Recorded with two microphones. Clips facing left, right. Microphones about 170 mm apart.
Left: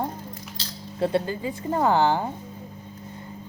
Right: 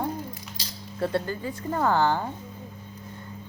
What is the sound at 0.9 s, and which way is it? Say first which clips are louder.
Speech: left 3 dB; 20° left (ahead or behind).